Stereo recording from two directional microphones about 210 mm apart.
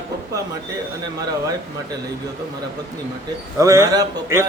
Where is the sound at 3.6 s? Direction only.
15° right (ahead or behind).